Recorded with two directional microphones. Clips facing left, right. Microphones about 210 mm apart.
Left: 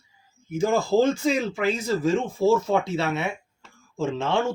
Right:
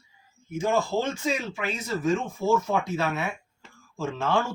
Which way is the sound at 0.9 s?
35° left (ahead or behind).